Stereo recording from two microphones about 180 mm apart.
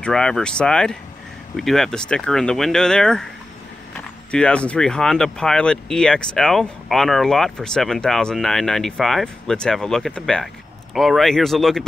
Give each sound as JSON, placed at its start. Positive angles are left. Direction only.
{"t": 0.0, "sound": "speech", "side_deg": 5}
{"t": 4.3, "sound": "speech", "side_deg": 5}